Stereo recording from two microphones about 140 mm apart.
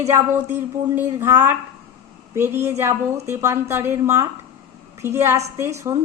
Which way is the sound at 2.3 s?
15° right (ahead or behind).